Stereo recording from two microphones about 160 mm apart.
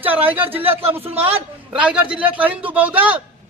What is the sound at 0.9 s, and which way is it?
Speech, 40° right (ahead or behind).